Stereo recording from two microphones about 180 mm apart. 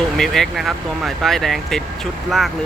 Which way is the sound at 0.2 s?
Centre (ahead or behind).